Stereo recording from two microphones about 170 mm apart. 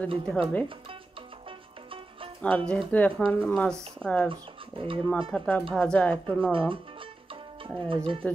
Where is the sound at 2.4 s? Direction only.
5° left (ahead or behind).